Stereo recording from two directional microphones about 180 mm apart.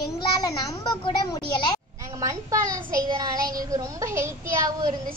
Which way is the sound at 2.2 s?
20° right (ahead or behind).